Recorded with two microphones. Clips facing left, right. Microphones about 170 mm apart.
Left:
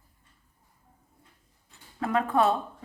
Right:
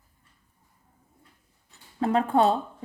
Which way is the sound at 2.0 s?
30° right (ahead or behind).